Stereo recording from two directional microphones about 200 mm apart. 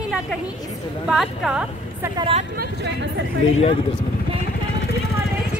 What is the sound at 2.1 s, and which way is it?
Speech, 30° right (ahead or behind).